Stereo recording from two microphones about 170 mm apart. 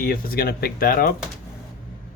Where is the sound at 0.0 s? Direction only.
60° left (ahead or behind).